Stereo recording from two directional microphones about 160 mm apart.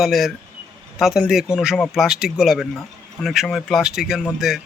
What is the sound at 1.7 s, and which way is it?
Speech, 10° left (ahead or behind).